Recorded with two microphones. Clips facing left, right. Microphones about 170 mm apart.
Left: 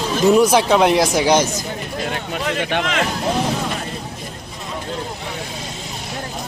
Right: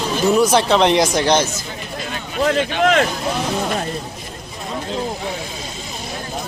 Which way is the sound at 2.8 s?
50° right (ahead or behind).